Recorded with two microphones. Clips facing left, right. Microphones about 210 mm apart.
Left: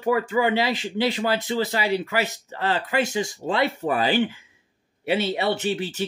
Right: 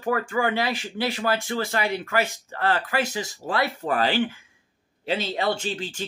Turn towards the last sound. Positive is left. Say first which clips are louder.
# left 2 dB
turn(degrees=15)  # may be behind; listen again after turning